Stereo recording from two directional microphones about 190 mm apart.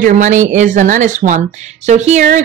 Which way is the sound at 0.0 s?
40° right (ahead or behind).